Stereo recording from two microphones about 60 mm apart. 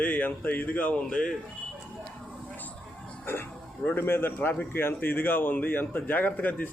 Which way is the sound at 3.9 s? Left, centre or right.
Left.